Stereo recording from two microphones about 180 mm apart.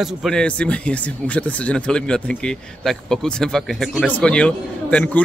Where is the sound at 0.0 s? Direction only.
Centre (ahead or behind).